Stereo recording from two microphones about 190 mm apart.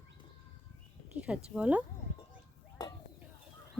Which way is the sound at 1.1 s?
5° right (ahead or behind).